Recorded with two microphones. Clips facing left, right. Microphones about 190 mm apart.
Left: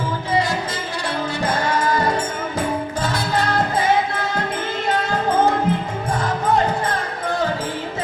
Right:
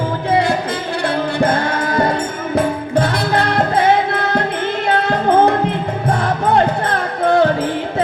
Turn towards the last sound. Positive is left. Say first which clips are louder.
# right 9 dB
turn(degrees=-65)  # may be behind; listen again after turning